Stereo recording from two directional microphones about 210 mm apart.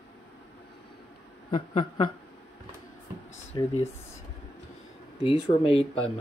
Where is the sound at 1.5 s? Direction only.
25° left (ahead or behind).